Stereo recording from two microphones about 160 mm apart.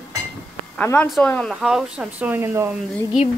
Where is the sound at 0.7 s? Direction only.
10° left (ahead or behind); by 2.7 s 15° right (ahead or behind).